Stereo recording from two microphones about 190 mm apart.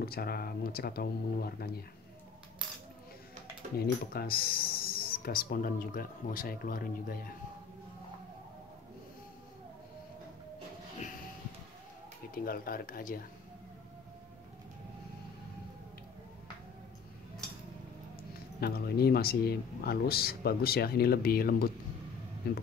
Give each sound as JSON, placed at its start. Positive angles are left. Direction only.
{"t": 0.0, "sound": "speech", "side_deg": 55}
{"t": 3.7, "sound": "speech", "side_deg": 55}
{"t": 12.4, "sound": "speech", "side_deg": 50}
{"t": 18.6, "sound": "speech", "side_deg": 55}